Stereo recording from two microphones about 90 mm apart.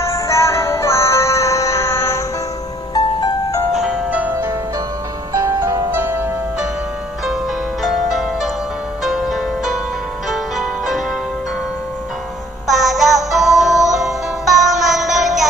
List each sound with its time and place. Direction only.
0.1 s music: 30° left (ahead or behind)
2.9 s music: 50° left (ahead or behind)
3.7 s music: 10° right (ahead or behind)
5.3 s music: 40° right (ahead or behind)
5.9 s music: 20° right (ahead or behind)
7.8 s music: centre (ahead or behind)
12.6 s music: centre (ahead or behind)